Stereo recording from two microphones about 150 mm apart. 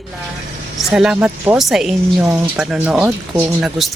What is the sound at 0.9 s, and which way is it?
Speech, 5° right (ahead or behind).